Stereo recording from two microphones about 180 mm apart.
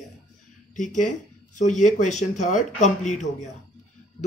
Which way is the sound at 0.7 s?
45° left (ahead or behind).